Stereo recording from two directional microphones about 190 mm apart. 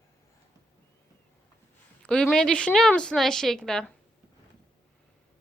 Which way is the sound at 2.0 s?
5° left (ahead or behind).